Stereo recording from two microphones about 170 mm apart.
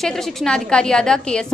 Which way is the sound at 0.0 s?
5° left (ahead or behind).